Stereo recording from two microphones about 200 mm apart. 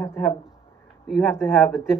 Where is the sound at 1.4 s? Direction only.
10° left (ahead or behind).